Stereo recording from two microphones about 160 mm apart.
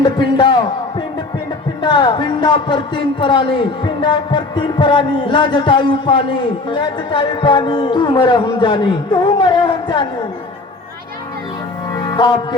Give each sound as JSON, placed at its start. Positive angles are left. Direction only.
{"t": 0.0, "sound": "a man's voice", "side_deg": 30}
{"t": 11.9, "sound": "music", "side_deg": 30}